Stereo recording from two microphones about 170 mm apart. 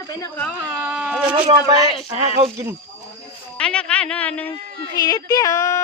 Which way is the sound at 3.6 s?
5° left (ahead or behind).